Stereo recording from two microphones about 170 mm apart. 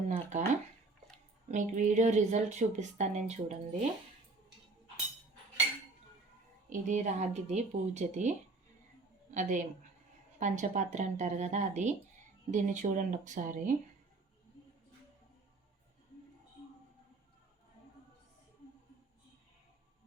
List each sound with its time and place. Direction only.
0.1 s a sound: 45° right (ahead or behind)
1.5 s speech: 45° right (ahead or behind)
6.7 s speech: 45° right (ahead or behind)